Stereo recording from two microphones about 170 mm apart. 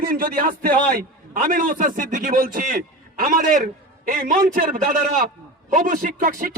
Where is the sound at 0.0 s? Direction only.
55° right (ahead or behind).